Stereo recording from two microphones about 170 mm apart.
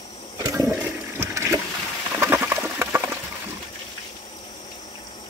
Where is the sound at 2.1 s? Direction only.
15° right (ahead or behind).